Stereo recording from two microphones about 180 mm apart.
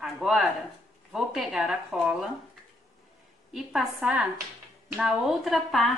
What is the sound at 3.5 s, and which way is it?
Speech, centre (ahead or behind).